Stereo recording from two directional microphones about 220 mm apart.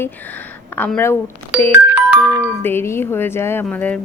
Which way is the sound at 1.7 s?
5° right (ahead or behind).